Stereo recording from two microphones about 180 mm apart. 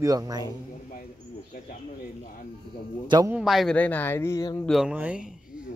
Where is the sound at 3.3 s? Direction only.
Centre (ahead or behind); by 4.6 s 15° left (ahead or behind).